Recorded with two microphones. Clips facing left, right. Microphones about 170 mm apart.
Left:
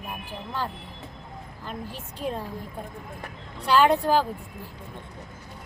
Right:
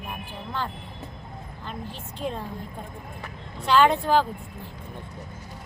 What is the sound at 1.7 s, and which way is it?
Speech, 5° left (ahead or behind).